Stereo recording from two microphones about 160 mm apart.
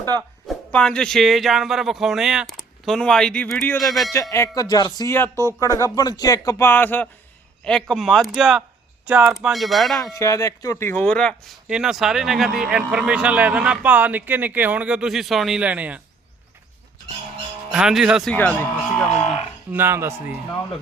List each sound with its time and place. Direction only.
0.7 s speech: 5° left (ahead or behind)
3.8 s speech: centre (ahead or behind)
4.1 s speech: 20° left (ahead or behind); by 10.0 s centre (ahead or behind)
10.0 s speech: 20° left (ahead or behind); by 16.0 s 10° right (ahead or behind)
17.7 s speech: 5° right (ahead or behind)
18.3 s speech: 10° left (ahead or behind)
19.7 s speech: 15° right (ahead or behind)